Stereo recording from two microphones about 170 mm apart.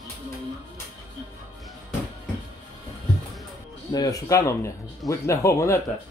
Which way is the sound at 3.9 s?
20° left (ahead or behind).